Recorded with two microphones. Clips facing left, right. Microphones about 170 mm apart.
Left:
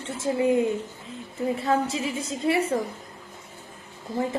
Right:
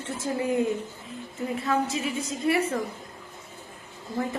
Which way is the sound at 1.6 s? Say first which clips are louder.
Even; 30° left (ahead or behind).